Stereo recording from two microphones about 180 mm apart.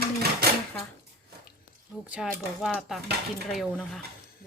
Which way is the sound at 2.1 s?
5° right (ahead or behind).